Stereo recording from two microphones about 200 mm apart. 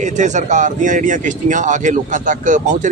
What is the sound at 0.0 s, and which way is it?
Speech, 35° right (ahead or behind).